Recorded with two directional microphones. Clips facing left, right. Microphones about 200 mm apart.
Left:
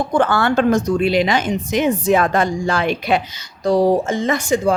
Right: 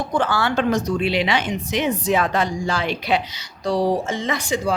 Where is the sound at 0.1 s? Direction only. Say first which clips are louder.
Left 4 dB; 55° left (ahead or behind).